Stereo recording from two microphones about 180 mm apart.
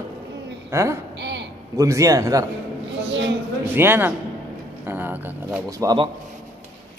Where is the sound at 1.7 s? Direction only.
15° right (ahead or behind).